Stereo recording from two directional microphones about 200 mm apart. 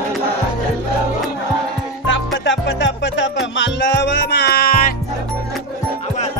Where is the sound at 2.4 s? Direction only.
65° left (ahead or behind).